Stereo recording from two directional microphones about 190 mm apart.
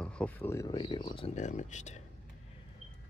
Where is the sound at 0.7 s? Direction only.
25° left (ahead or behind).